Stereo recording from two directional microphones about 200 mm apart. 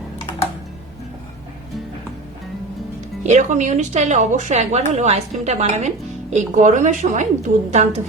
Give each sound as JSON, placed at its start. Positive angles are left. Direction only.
{"t": 3.2, "sound": "a woman's voice", "side_deg": -35}